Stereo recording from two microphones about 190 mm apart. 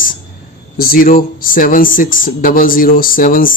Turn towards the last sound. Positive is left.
turn(degrees=45)  # may be behind; listen again after turning